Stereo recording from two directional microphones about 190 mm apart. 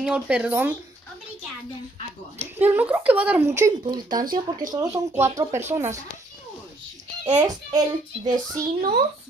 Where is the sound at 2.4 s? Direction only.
10° right (ahead or behind).